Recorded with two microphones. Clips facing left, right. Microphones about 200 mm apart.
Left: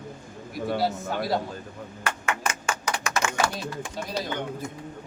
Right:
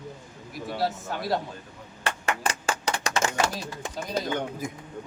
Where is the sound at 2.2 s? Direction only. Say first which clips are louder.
Right 2 dB; 35° right (ahead or behind).